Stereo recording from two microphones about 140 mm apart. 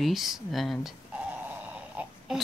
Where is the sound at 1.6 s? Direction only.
10° right (ahead or behind).